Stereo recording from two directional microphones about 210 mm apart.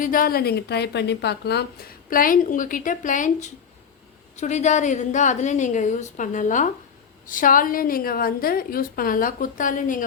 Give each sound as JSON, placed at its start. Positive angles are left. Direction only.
{"t": 0.0, "sound": "a woman's voice", "side_deg": 40}